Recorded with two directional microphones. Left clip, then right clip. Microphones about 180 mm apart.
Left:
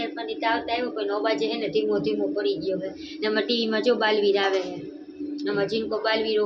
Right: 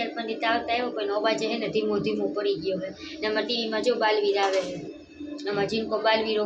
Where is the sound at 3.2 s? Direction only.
25° left (ahead or behind).